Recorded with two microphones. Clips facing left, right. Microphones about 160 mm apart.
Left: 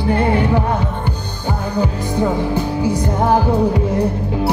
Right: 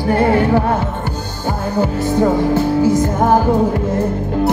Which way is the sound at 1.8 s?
45° right (ahead or behind).